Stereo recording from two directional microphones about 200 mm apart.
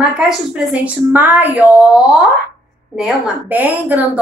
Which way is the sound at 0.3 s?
5° right (ahead or behind).